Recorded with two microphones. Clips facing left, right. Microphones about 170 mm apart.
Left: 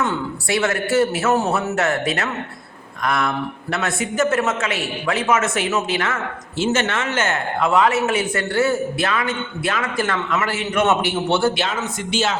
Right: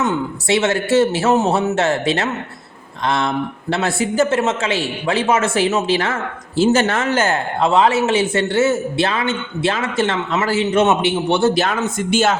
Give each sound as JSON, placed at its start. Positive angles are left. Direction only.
{"t": 0.0, "sound": "speech", "side_deg": -20}
{"t": 11.7, "sound": "speech", "side_deg": -50}